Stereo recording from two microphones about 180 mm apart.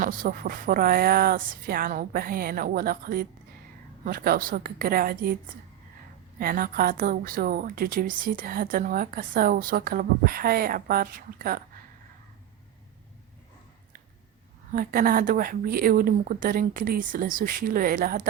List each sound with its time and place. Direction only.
0.0 s a woman's voice: 55° right (ahead or behind)
6.4 s a woman's voice: 55° right (ahead or behind)
14.7 s a woman's voice: 50° right (ahead or behind)